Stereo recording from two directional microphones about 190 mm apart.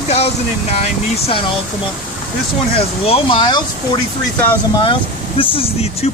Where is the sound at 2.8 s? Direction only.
30° left (ahead or behind).